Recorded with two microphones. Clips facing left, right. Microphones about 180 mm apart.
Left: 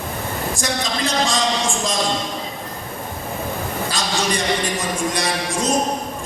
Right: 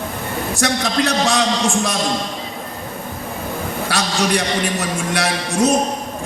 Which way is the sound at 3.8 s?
70° right (ahead or behind).